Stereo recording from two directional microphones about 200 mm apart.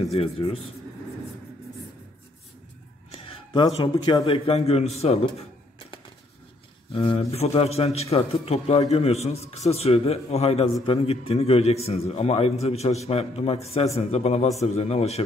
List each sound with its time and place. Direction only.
0.1 s a man's voice: 30° left (ahead or behind)
3.1 s speech: 25° left (ahead or behind)
6.9 s a man's voice: 25° left (ahead or behind)